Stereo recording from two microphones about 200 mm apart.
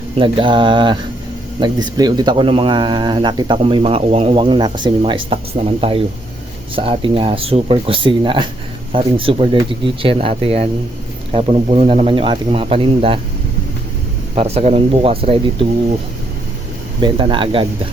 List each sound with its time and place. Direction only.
0.2 s speech: 25° right (ahead or behind)
14.3 s speech: 30° right (ahead or behind)
17.0 s speech: 25° right (ahead or behind)